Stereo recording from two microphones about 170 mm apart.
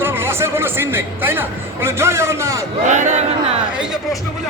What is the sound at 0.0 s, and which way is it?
A man's voice, 15° right (ahead or behind).